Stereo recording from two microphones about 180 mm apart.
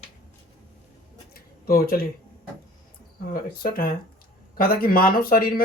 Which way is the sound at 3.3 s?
55° left (ahead or behind).